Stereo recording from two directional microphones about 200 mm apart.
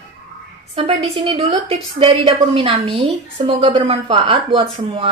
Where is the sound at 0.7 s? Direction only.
30° right (ahead or behind).